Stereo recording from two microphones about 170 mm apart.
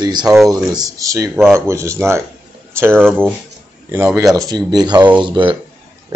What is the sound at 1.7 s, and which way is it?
Speech, 15° right (ahead or behind).